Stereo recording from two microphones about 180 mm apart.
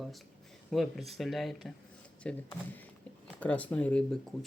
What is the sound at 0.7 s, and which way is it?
Speech, centre (ahead or behind).